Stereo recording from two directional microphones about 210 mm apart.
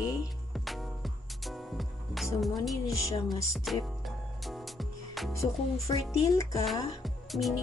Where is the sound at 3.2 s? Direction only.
Centre (ahead or behind).